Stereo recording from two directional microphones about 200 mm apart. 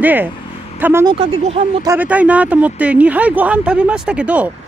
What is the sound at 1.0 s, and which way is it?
Speech, 30° right (ahead or behind).